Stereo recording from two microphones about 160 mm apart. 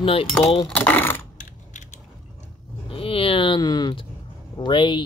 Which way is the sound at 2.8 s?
35° left (ahead or behind).